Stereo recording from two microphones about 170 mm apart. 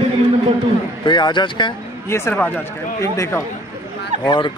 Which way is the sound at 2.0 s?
15° left (ahead or behind).